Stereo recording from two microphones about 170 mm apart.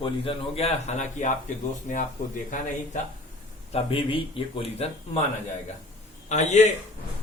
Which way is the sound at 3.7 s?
30° left (ahead or behind).